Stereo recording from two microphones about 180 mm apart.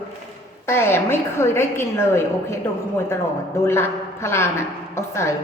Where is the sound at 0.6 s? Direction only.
15° left (ahead or behind).